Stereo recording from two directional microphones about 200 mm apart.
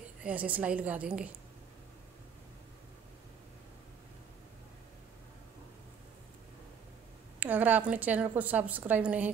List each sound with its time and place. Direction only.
0.2 s a woman's voice: 5° right (ahead or behind)
7.3 s a woman's voice: 10° right (ahead or behind)